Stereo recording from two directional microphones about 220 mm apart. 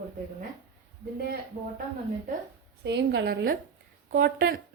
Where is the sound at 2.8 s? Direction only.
50° right (ahead or behind).